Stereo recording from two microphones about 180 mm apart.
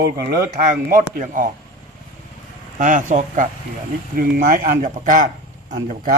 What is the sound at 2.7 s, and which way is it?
Speech, 45° right (ahead or behind).